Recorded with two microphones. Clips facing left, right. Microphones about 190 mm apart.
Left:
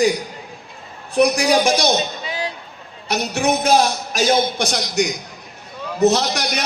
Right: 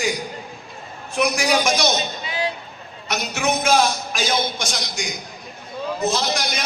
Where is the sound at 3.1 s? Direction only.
35° left (ahead or behind).